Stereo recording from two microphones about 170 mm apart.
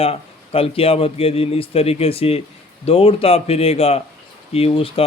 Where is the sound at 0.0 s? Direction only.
35° left (ahead or behind).